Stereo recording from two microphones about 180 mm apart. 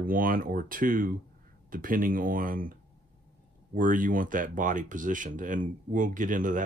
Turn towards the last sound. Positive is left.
turn(degrees=-45)  # may be behind; listen again after turning